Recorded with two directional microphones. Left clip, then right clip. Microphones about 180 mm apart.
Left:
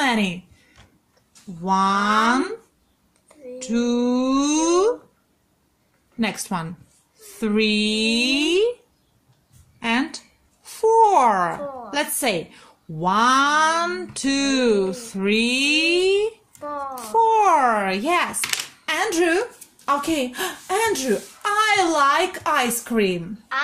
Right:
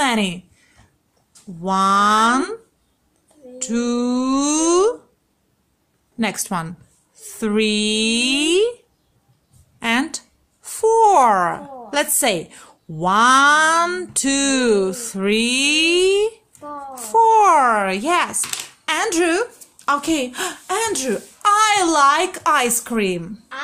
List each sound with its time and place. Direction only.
0.0 s a woman's voice: 20° right (ahead or behind)
1.6 s speech: 20° right (ahead or behind)
3.5 s speech: 20° right (ahead or behind)
6.1 s speech: 20° right (ahead or behind)
9.8 s speech: 20° right (ahead or behind)